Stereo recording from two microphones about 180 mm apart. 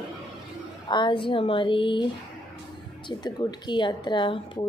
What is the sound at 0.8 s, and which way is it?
Speech, 25° left (ahead or behind).